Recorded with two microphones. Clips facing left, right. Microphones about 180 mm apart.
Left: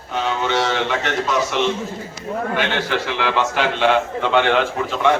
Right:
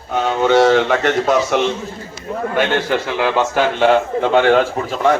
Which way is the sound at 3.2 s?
45° right (ahead or behind).